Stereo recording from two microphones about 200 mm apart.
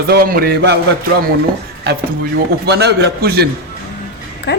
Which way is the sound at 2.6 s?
55° right (ahead or behind).